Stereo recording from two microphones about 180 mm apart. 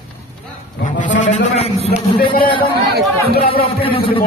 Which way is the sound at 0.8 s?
45° left (ahead or behind).